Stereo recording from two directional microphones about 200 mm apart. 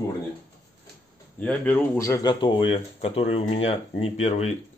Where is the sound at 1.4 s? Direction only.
5° left (ahead or behind).